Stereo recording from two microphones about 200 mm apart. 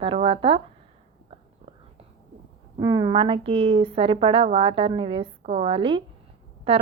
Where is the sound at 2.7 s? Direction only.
20° right (ahead or behind).